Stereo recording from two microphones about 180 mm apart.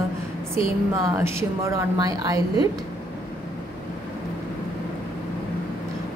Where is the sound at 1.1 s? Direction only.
15° right (ahead or behind).